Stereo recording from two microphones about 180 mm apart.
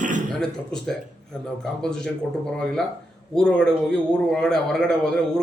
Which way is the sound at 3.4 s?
5° left (ahead or behind).